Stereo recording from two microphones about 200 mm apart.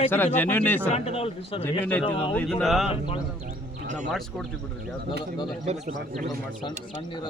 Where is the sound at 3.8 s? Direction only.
35° right (ahead or behind).